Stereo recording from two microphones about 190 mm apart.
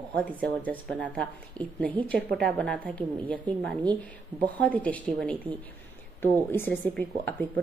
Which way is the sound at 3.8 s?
20° right (ahead or behind).